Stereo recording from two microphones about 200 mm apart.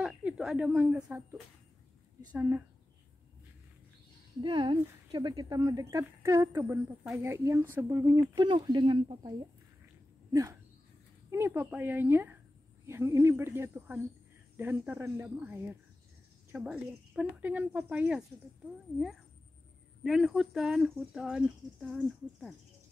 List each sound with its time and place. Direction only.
0.0 s speech: 5° right (ahead or behind)
2.3 s a woman's voice: 10° right (ahead or behind)
4.4 s a woman's voice: 25° right (ahead or behind); by 18.2 s 5° right (ahead or behind)
20.0 s speech: centre (ahead or behind)